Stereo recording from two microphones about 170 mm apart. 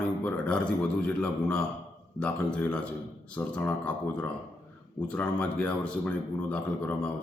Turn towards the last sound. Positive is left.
turn(degrees=5)  # may be behind; listen again after turning